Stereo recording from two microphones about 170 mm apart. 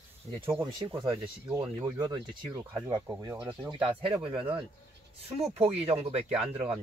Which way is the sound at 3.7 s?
30° right (ahead or behind).